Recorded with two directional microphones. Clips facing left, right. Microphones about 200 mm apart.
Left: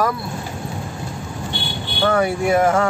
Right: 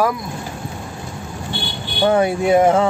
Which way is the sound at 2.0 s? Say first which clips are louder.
Right 2 dB; 20° right (ahead or behind).